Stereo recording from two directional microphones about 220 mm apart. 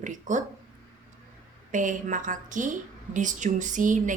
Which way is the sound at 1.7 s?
35° right (ahead or behind).